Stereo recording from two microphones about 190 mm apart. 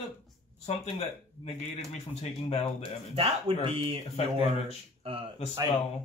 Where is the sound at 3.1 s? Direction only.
30° right (ahead or behind).